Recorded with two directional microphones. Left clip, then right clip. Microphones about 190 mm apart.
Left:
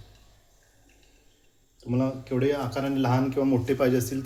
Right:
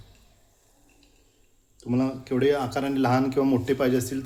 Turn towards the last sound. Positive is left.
turn(degrees=-5)  # may be behind; listen again after turning